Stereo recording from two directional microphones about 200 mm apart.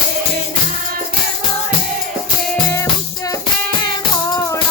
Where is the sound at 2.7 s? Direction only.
15° left (ahead or behind).